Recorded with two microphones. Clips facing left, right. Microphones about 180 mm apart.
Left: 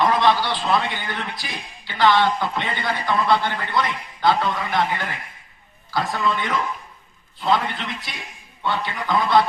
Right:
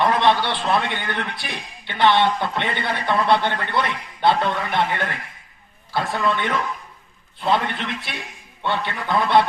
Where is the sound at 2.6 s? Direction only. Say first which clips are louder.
Right 1 dB; 65° right (ahead or behind).